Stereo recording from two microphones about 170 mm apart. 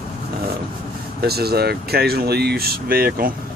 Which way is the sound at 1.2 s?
70° right (ahead or behind).